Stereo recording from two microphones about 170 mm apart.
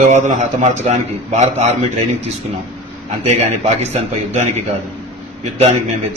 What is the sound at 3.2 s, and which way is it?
A man's voice, 40° right (ahead or behind).